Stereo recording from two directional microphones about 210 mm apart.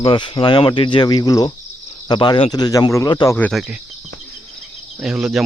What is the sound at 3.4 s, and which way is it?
Speech, centre (ahead or behind).